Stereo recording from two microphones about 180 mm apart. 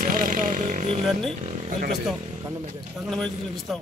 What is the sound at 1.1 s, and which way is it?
Speech, centre (ahead or behind).